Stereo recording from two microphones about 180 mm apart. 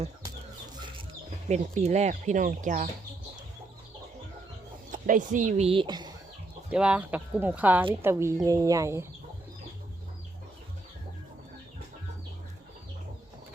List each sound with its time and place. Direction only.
1.5 s speech: 40° right (ahead or behind)
4.9 s speech: 45° right (ahead or behind); by 6.1 s 25° right (ahead or behind)
6.7 s speech: 5° right (ahead or behind)